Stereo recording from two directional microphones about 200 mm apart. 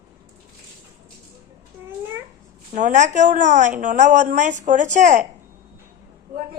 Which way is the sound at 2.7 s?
35° right (ahead or behind).